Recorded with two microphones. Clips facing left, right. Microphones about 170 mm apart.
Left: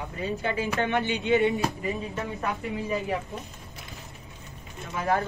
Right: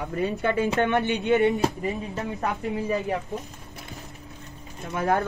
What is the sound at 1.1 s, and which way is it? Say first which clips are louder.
Speech: right 2 dB; 55° right (ahead or behind).